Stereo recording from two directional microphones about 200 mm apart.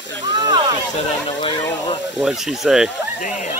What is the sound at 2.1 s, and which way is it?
Speech, 5° right (ahead or behind).